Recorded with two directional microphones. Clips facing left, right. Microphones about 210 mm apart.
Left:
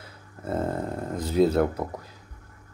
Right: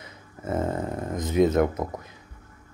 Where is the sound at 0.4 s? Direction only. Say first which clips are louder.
Right 1 dB; 10° right (ahead or behind).